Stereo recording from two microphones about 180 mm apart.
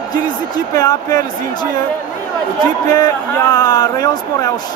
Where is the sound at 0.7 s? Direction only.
20° left (ahead or behind).